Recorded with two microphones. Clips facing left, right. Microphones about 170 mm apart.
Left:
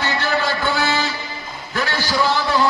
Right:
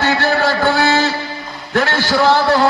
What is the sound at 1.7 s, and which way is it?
Speech, 50° right (ahead or behind).